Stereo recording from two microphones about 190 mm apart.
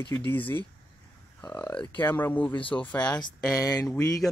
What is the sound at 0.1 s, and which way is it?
Speech, 10° left (ahead or behind).